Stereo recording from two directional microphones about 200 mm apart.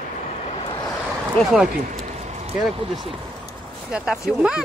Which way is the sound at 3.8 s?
5° right (ahead or behind).